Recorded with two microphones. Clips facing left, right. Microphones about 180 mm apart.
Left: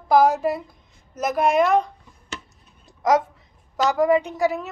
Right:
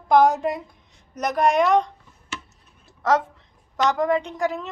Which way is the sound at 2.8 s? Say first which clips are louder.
Left 2 dB; 15° left (ahead or behind).